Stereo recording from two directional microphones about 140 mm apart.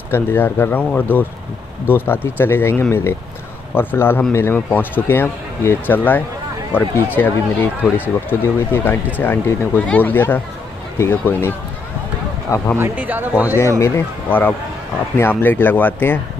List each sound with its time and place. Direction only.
0.1 s speech: 15° left (ahead or behind)
12.7 s speech: 15° right (ahead or behind)
13.6 s speech: 20° left (ahead or behind)